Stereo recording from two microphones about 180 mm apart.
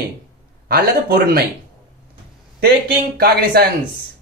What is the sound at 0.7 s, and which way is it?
Speech, 60° right (ahead or behind).